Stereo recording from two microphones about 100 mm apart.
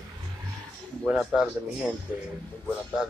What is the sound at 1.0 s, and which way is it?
Speech, 5° right (ahead or behind).